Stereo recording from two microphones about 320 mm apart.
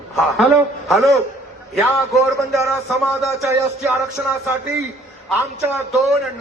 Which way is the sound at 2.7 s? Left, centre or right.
Centre.